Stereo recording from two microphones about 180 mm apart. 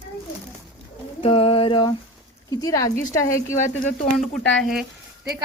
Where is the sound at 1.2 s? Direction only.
35° left (ahead or behind).